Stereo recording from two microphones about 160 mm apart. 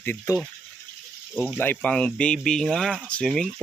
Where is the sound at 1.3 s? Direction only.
5° right (ahead or behind).